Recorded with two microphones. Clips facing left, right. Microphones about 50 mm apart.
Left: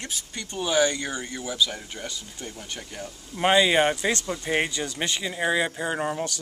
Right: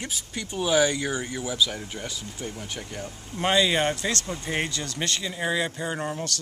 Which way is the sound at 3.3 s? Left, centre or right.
Centre.